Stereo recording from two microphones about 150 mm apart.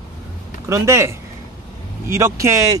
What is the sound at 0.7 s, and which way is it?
Speech, 15° right (ahead or behind).